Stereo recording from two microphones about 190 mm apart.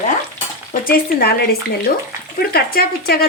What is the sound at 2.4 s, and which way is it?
Frying, 55° left (ahead or behind).